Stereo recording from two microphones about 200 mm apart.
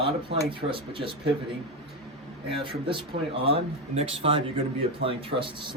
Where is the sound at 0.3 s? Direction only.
25° right (ahead or behind).